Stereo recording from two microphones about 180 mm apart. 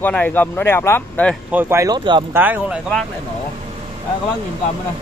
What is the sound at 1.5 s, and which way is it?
Speech, 10° right (ahead or behind).